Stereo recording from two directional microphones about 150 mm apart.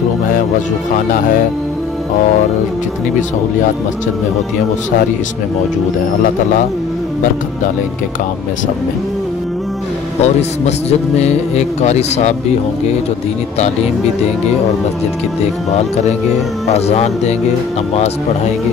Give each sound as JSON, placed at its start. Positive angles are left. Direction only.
{"t": 10.2, "sound": "speech", "side_deg": 45}
{"t": 16.6, "sound": "speech", "side_deg": 45}